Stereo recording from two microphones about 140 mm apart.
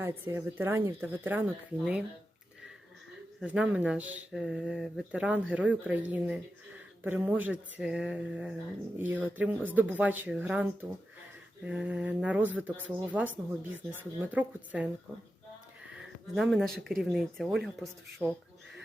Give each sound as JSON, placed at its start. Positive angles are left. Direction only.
{"t": 0.0, "sound": "speech", "side_deg": -15}
{"t": 3.4, "sound": "speech", "side_deg": -10}
{"t": 15.9, "sound": "speech", "side_deg": -5}
{"t": 18.2, "sound": "speech", "side_deg": -15}